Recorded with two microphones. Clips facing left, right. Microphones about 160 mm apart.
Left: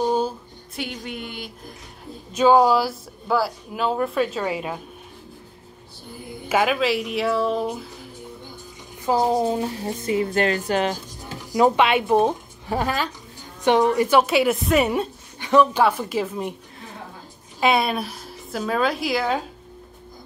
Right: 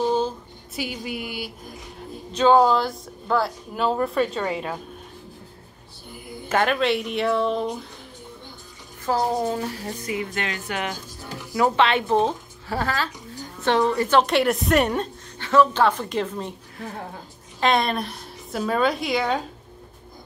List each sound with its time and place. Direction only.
0.7 s speech: 5° right (ahead or behind)
2.3 s speech: 10° left (ahead or behind)
6.5 s speech: 5° left (ahead or behind)
9.0 s a woman's voice: 15° left (ahead or behind); by 11.0 s 35° left (ahead or behind)
11.5 s a woman's voice: 15° left (ahead or behind)
17.6 s a woman's voice: 5° left (ahead or behind)